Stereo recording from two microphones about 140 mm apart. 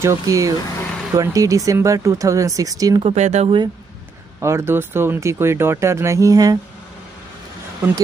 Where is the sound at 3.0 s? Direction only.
50° right (ahead or behind).